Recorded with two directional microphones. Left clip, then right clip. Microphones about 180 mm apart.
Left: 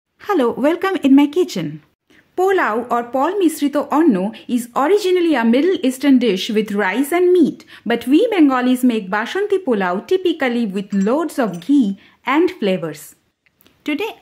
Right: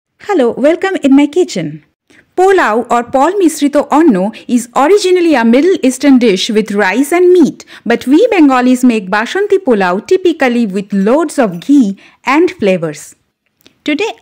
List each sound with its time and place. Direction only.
0.2 s a woman's voice: 20° right (ahead or behind)
2.3 s speech: 35° right (ahead or behind)